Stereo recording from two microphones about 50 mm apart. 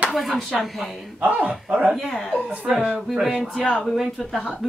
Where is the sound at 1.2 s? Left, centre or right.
Right.